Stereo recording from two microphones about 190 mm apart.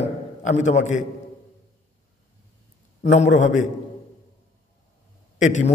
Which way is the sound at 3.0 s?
40° left (ahead or behind).